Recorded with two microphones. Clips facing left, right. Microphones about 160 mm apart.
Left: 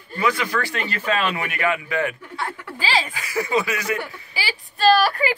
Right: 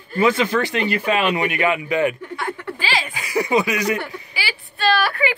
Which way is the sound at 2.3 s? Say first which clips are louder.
Right 3 dB; 35° left (ahead or behind).